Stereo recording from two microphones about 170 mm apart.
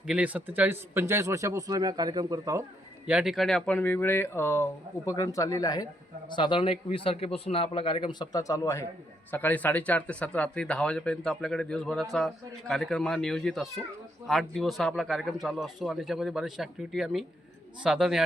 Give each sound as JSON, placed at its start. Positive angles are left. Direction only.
{"t": 0.1, "sound": "speech", "side_deg": -10}
{"t": 3.1, "sound": "a man's voice", "side_deg": -5}